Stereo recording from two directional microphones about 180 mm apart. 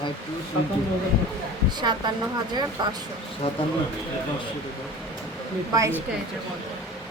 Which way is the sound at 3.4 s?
30° left (ahead or behind).